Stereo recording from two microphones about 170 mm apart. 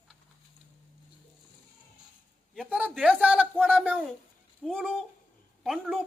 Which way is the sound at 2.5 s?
5° right (ahead or behind).